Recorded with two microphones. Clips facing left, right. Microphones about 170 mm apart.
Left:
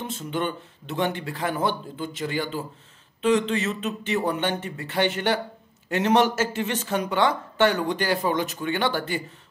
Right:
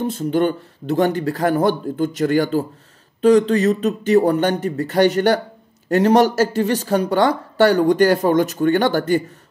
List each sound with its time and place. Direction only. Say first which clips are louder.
0.0 s speech: right 10 dB; 40° right (ahead or behind)